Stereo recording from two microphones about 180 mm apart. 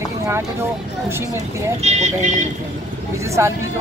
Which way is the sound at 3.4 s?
15° right (ahead or behind).